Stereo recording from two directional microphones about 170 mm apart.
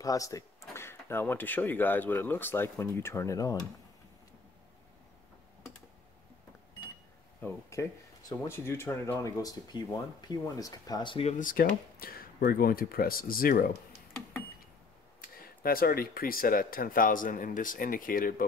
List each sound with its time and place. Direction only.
0.0 s speech: 20° left (ahead or behind)
7.4 s speech: 20° left (ahead or behind)
11.3 s speech: 50° left (ahead or behind)
15.2 s speech: 60° left (ahead or behind)